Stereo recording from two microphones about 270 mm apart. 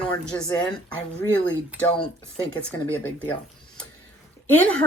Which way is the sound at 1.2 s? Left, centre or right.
Centre.